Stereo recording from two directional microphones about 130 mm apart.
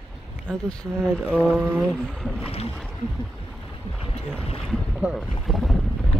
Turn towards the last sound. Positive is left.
turn(degrees=0)  # may be behind; listen again after turning